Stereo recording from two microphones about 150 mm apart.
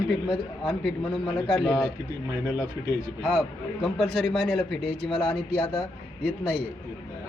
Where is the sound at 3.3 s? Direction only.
Centre (ahead or behind).